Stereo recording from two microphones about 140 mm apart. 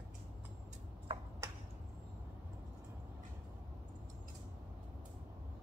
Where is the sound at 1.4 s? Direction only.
20° right (ahead or behind).